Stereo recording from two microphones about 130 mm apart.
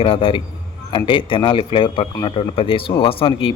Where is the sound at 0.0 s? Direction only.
45° left (ahead or behind).